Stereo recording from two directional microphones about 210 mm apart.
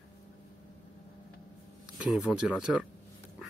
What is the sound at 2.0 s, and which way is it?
Speech, 5° right (ahead or behind).